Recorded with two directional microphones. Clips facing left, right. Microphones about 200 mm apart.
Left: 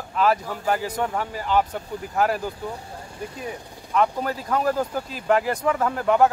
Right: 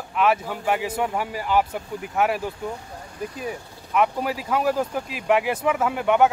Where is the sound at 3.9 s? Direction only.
5° right (ahead or behind).